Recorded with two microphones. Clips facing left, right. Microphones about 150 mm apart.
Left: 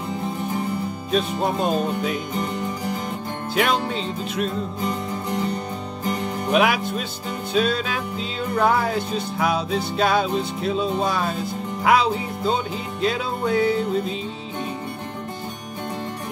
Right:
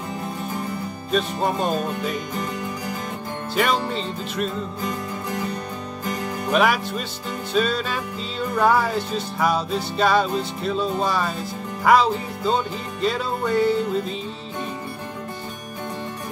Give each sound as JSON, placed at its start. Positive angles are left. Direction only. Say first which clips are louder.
{"t": 1.1, "sound": "music", "louder": "even", "side_deg": 0}
{"t": 3.5, "sound": "music", "louder": "even", "side_deg": 0}
{"t": 6.5, "sound": "music", "louder": "even", "side_deg": 0}